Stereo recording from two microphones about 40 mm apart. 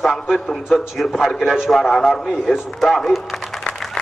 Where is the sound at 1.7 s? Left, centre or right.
Centre.